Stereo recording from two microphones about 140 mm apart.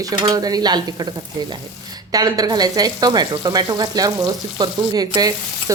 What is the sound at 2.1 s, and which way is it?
Frying, 25° right (ahead or behind).